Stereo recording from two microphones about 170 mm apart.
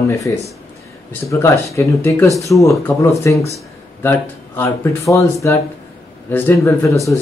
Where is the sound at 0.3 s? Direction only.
20° left (ahead or behind).